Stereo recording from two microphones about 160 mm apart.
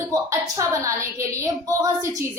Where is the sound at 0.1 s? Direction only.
20° right (ahead or behind).